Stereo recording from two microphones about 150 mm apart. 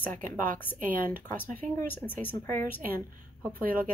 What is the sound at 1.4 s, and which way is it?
Speech, 15° left (ahead or behind).